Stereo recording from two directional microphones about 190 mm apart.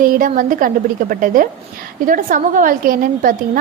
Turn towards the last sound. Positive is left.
turn(degrees=-45)  # may be behind; listen again after turning